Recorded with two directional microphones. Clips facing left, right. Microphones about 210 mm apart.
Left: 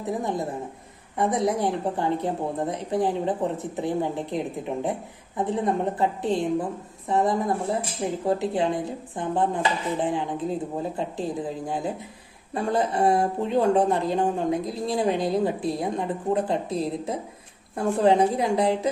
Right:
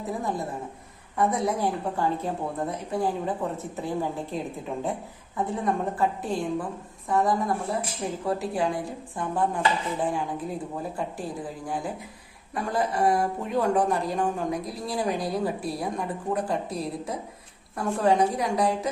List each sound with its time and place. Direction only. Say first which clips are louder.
0.2 s speech: left 2 dB; 20° left (ahead or behind)